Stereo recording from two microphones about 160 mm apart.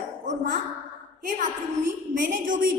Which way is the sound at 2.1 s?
55° right (ahead or behind).